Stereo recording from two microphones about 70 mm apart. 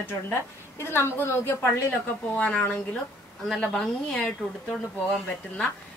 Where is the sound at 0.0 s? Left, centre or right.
Left.